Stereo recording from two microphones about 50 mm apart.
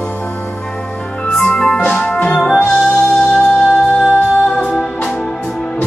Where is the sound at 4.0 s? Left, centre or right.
Left.